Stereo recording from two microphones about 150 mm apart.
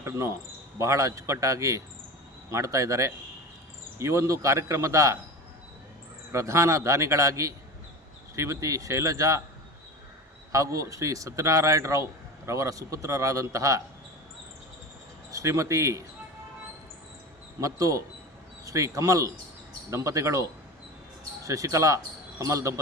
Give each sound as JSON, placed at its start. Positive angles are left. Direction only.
{"t": 0.0, "sound": "speech", "side_deg": -20}
{"t": 6.3, "sound": "speech", "side_deg": -20}
{"t": 10.5, "sound": "speech", "side_deg": -20}
{"t": 15.3, "sound": "speech", "side_deg": -20}
{"t": 17.6, "sound": "speech", "side_deg": -20}